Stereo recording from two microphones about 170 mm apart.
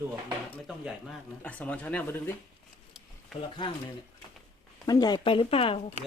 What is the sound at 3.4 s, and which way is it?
Speech, 30° left (ahead or behind).